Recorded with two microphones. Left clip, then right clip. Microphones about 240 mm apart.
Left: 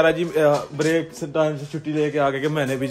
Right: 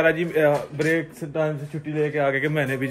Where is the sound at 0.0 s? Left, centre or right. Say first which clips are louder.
Left 2 dB; centre.